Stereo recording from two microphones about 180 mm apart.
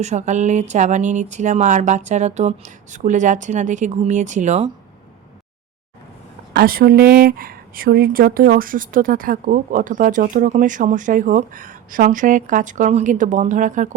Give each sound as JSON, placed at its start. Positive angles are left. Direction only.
{"t": 0.0, "sound": "speech", "side_deg": -40}
{"t": 6.5, "sound": "speech", "side_deg": -55}